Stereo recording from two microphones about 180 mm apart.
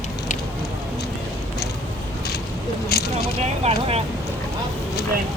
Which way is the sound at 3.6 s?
35° right (ahead or behind).